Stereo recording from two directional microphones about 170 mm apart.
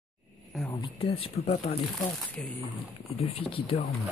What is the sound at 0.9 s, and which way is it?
Speech, 35° left (ahead or behind).